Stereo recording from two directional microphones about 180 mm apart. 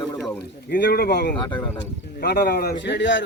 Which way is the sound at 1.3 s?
25° left (ahead or behind).